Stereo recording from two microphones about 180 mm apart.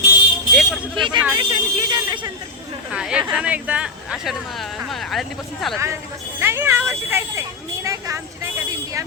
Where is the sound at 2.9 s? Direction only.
5° right (ahead or behind).